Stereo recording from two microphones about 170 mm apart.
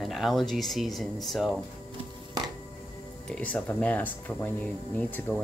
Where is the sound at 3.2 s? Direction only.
10° left (ahead or behind).